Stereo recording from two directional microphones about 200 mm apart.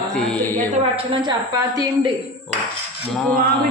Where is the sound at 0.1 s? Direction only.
5° left (ahead or behind).